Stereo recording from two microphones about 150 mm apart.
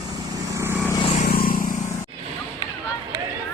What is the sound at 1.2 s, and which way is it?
Vehicle, 70° left (ahead or behind).